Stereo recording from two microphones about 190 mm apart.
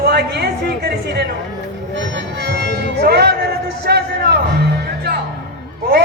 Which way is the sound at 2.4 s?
65° right (ahead or behind).